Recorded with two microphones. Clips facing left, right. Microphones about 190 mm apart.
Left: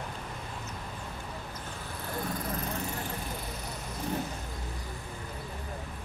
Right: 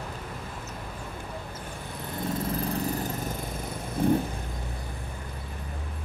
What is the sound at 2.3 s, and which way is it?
Vehicle, 30° right (ahead or behind).